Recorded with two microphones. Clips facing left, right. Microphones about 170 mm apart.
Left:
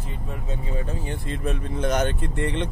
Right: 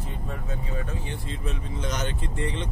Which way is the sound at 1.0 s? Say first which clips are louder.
Left 5 dB; 50° left (ahead or behind).